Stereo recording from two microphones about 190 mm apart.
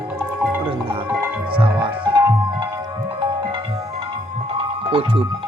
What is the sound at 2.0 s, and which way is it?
Tabla, 20° right (ahead or behind).